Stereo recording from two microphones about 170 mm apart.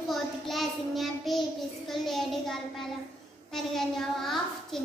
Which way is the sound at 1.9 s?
Centre (ahead or behind).